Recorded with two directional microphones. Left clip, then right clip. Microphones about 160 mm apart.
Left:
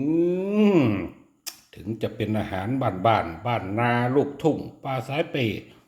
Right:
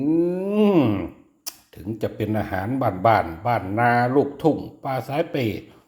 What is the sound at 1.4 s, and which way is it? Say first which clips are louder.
Speech: right 1 dB; 15° right (ahead or behind).